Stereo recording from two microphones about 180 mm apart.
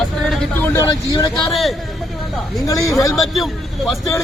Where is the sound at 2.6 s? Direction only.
20° left (ahead or behind).